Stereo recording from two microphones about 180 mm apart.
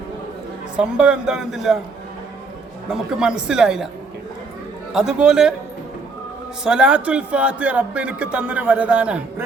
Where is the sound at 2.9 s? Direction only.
5° right (ahead or behind).